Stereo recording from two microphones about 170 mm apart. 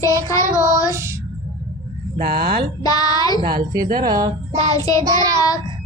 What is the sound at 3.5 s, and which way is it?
Music, 25° right (ahead or behind).